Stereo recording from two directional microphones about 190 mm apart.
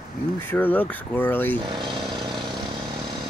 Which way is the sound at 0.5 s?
10° left (ahead or behind).